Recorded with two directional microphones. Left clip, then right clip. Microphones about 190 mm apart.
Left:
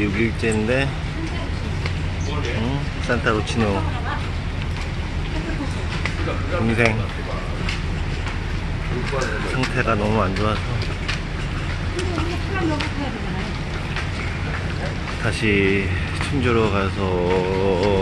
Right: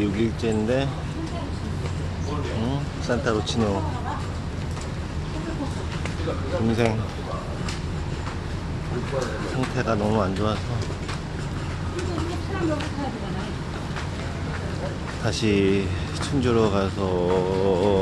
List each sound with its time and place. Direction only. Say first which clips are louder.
0.0 s speech: left 3 dB; 10° right (ahead or behind)
3.1 s speech: left 3 dB; 5° right (ahead or behind)
9.6 s speech: left 3 dB; 10° right (ahead or behind)
15.2 s speech: left 3 dB; 20° right (ahead or behind)
17.1 s speech: left 2 dB; 10° right (ahead or behind)